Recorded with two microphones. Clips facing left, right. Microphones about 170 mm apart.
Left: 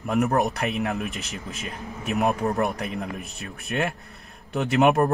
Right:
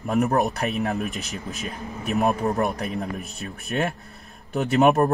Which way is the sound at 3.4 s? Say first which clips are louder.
Right 1 dB; 35° right (ahead or behind).